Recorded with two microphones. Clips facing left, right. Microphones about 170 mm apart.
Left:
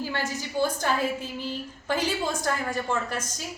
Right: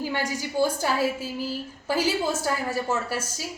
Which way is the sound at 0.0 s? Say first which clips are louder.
Right 2 dB; 15° right (ahead or behind).